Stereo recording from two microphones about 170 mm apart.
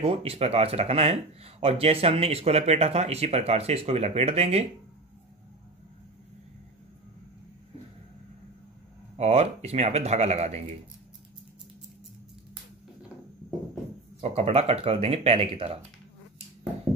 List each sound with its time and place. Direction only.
0.0 s speech: 35° right (ahead or behind)
9.1 s speech: 40° right (ahead or behind)
14.2 s speech: 35° right (ahead or behind)